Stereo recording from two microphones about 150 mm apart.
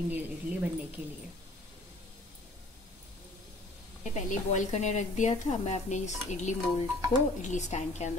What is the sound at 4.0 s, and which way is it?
Speech, 50° left (ahead or behind).